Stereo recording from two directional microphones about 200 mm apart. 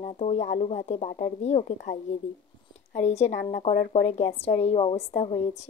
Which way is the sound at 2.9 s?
35° left (ahead or behind).